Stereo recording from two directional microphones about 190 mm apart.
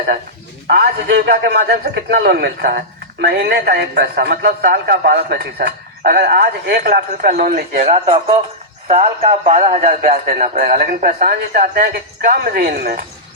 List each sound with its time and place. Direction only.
0.7 s a man's voice: 60° right (ahead or behind)
7.9 s a man's voice: 30° right (ahead or behind); by 13.1 s 50° right (ahead or behind)